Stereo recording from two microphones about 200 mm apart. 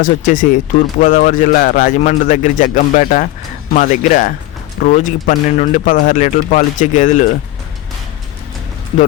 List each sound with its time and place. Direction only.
0.0 s speech: 40° left (ahead or behind)